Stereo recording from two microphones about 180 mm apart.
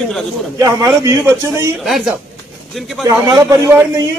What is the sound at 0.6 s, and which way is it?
A man's voice, 20° right (ahead or behind).